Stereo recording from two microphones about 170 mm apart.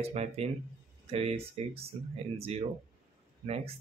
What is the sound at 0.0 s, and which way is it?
Speech, 35° right (ahead or behind).